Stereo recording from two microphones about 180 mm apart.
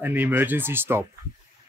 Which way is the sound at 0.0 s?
10° right (ahead or behind).